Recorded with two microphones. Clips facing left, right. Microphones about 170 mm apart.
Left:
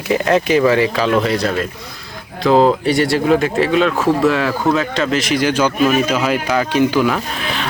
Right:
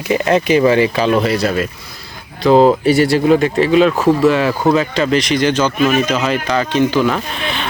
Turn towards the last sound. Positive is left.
turn(degrees=5)  # may be behind; listen again after turning